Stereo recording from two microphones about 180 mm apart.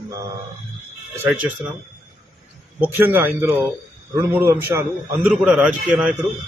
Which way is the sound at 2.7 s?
10° right (ahead or behind).